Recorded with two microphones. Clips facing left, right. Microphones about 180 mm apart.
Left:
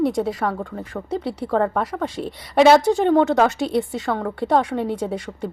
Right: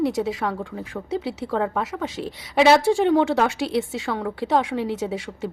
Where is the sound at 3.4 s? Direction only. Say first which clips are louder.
Left 2 dB; 45° left (ahead or behind).